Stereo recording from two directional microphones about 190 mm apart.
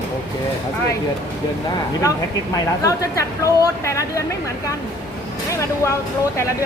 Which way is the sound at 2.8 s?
15° left (ahead or behind).